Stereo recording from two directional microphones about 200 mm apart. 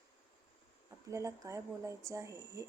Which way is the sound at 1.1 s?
15° right (ahead or behind).